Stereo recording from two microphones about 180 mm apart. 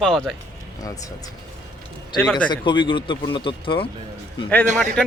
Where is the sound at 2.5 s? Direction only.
25° left (ahead or behind).